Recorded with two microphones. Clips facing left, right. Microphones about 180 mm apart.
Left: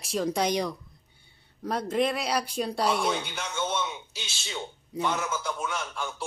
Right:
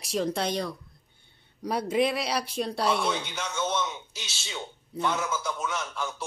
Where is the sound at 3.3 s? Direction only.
10° left (ahead or behind).